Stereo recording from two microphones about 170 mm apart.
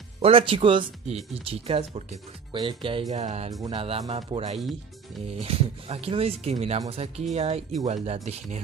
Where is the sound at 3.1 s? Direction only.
40° right (ahead or behind).